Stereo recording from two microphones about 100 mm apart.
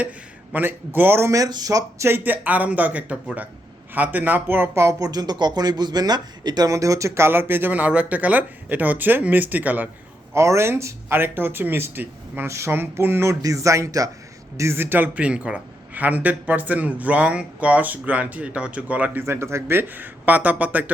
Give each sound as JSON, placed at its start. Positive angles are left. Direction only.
{"t": 0.5, "sound": "speech", "side_deg": -20}
{"t": 2.0, "sound": "a man's voice", "side_deg": -20}
{"t": 10.3, "sound": "a man's voice", "side_deg": -30}
{"t": 19.2, "sound": "a man's voice", "side_deg": -25}